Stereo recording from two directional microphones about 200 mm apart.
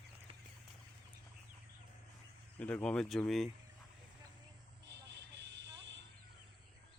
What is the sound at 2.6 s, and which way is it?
Speech, 5° left (ahead or behind).